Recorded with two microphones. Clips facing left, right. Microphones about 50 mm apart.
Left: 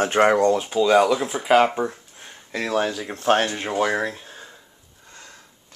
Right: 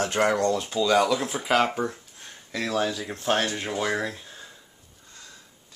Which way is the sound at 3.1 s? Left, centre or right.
Left.